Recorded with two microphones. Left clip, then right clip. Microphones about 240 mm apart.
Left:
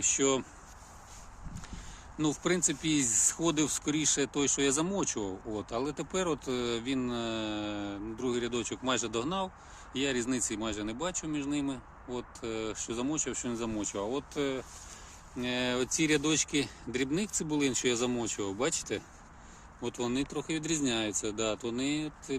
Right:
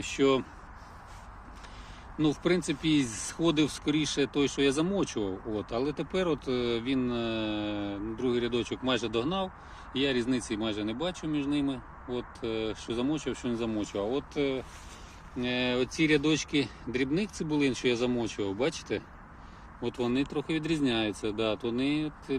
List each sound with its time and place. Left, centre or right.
0.0 s speech: centre
2.1 s speech: centre